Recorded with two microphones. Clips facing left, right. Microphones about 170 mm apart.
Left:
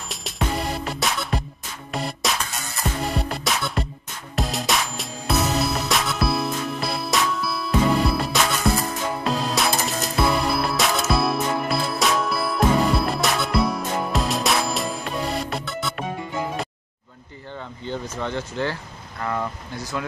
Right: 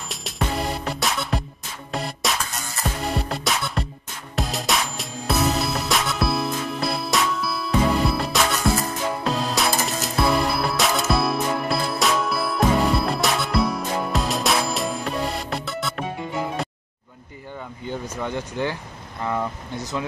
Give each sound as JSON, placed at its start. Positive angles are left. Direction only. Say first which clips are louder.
{"t": 0.1, "sound": "music", "louder": "even", "side_deg": 0}
{"t": 17.8, "sound": "speech", "louder": "even", "side_deg": -10}